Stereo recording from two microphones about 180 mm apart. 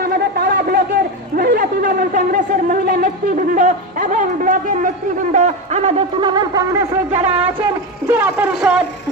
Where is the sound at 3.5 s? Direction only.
50° right (ahead or behind).